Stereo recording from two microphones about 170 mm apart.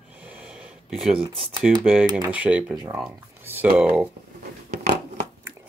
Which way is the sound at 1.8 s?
10° right (ahead or behind).